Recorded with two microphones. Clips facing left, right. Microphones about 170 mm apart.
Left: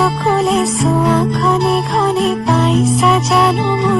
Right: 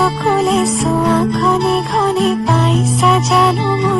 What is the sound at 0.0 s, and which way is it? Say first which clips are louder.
Music: even; centre (ahead or behind).